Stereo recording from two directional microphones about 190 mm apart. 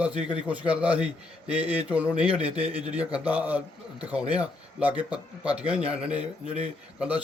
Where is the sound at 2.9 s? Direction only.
5° right (ahead or behind).